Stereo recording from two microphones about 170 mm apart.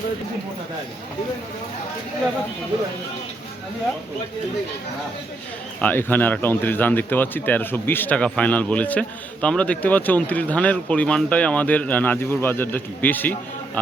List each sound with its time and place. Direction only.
5.8 s a man's voice: 10° left (ahead or behind)